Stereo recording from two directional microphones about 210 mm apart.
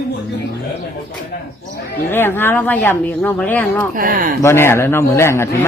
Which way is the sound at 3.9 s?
45° right (ahead or behind).